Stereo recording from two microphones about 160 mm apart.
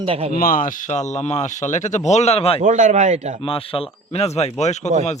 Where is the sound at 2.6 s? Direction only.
50° right (ahead or behind).